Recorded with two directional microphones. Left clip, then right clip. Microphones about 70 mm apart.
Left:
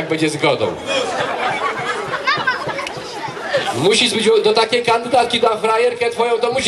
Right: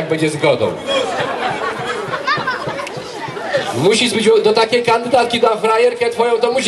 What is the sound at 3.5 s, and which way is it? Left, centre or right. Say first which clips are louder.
Chatter: even; left.